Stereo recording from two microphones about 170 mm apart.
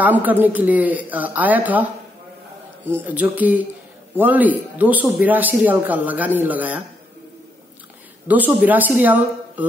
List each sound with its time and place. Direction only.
0.0 s a man's voice: 10° right (ahead or behind)
2.9 s a man's voice: 10° right (ahead or behind)
8.3 s a man's voice: 10° right (ahead or behind)